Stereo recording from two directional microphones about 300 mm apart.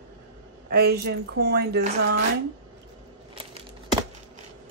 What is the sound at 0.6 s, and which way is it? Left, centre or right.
Speech, right.